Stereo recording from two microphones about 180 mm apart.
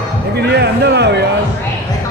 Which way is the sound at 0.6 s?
65° right (ahead or behind).